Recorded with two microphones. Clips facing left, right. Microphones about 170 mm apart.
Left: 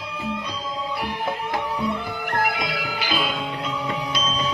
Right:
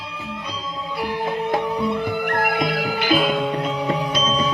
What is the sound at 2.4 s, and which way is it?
Music, 55° right (ahead or behind).